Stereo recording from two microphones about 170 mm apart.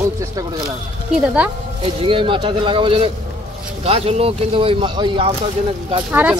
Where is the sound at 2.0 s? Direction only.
30° right (ahead or behind).